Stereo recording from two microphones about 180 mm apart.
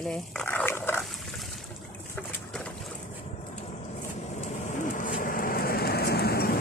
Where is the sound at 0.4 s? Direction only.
10° left (ahead or behind).